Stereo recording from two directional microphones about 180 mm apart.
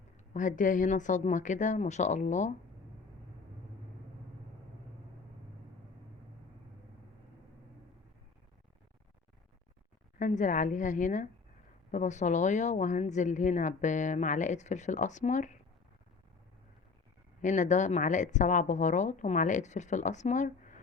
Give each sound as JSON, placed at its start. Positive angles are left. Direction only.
{"t": 0.3, "sound": "a woman's voice", "side_deg": 45}
{"t": 10.2, "sound": "a woman's voice", "side_deg": 45}
{"t": 17.4, "sound": "a woman's voice", "side_deg": 45}